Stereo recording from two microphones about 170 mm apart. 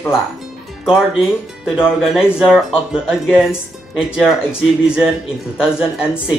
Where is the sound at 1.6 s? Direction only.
5° right (ahead or behind).